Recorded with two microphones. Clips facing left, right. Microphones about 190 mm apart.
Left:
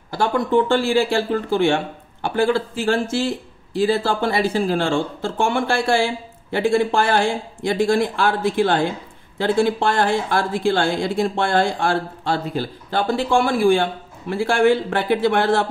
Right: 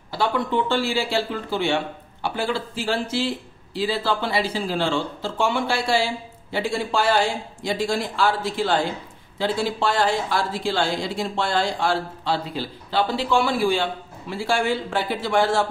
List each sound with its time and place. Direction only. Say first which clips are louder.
0.1 s speech: left 5 dB; 45° left (ahead or behind)